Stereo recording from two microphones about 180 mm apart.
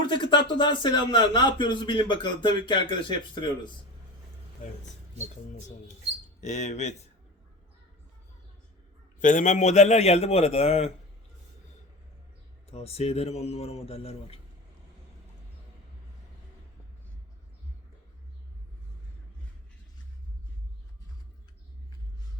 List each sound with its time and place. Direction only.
0.1 s speech: 25° left (ahead or behind)
6.4 s a man's voice: 40° left (ahead or behind)
9.2 s a man's voice: 45° left (ahead or behind)
12.7 s a man's voice: 35° left (ahead or behind)